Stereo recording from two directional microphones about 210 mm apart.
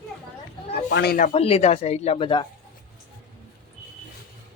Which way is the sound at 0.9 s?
50° left (ahead or behind).